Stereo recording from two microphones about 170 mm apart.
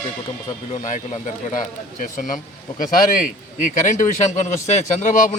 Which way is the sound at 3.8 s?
45° left (ahead or behind).